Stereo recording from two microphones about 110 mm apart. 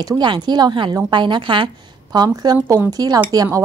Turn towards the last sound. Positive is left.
turn(degrees=-35)  # may be behind; listen again after turning